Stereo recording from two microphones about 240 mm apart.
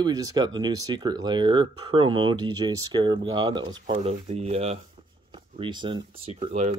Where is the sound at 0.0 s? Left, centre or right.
Centre.